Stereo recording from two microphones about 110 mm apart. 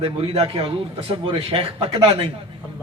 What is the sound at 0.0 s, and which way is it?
A man's voice, 60° right (ahead or behind).